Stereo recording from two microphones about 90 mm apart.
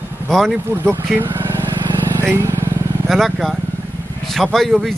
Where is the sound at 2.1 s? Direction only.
30° right (ahead or behind).